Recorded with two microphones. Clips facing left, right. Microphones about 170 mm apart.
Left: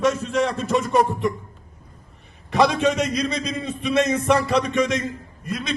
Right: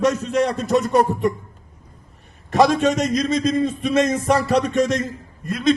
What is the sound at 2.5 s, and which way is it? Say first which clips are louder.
A man's voice: right 2 dB; 45° right (ahead or behind).